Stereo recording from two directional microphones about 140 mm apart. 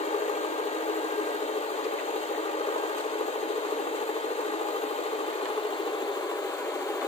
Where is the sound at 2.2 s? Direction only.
45° left (ahead or behind).